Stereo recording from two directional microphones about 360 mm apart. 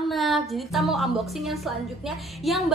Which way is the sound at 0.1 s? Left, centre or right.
Centre.